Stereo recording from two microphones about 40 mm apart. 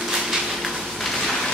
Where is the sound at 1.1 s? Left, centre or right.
Centre.